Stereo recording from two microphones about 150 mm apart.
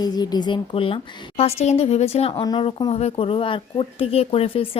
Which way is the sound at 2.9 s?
45° left (ahead or behind).